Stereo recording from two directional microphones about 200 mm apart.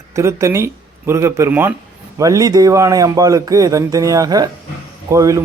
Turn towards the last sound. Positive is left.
turn(degrees=-15)  # may be behind; listen again after turning